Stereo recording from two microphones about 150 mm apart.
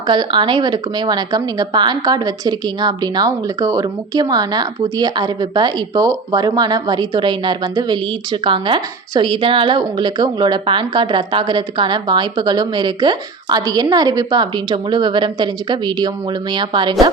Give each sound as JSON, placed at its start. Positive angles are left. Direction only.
{"t": 0.1, "sound": "a woman's voice", "side_deg": -30}